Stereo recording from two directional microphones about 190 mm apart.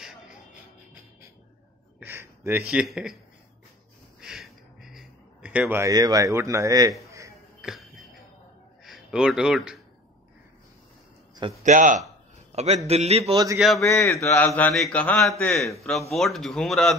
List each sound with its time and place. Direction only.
2.0 s speech: 10° right (ahead or behind)
4.2 s a sound: centre (ahead or behind)
7.6 s a sound: centre (ahead or behind)
8.8 s a man's voice: centre (ahead or behind)
11.6 s a man's voice: 45° right (ahead or behind)
13.6 s a man's voice: centre (ahead or behind)
13.8 s a man's voice: 15° left (ahead or behind)